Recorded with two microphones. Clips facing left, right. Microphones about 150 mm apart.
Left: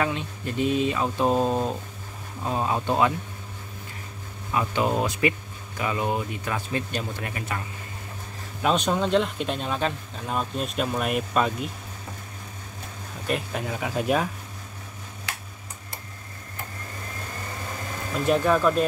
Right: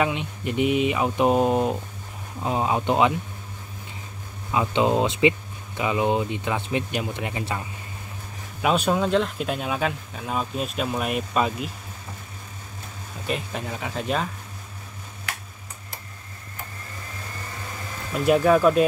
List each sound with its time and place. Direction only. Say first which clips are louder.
0.0 s speech: right 2 dB; 15° right (ahead or behind)
4.6 s speech: right 3 dB; 20° right (ahead or behind)
8.6 s speech: right 2 dB; 5° right (ahead or behind)
13.3 s speech: left 1 dB; centre (ahead or behind)
18.2 s speech: right 4 dB; 10° right (ahead or behind)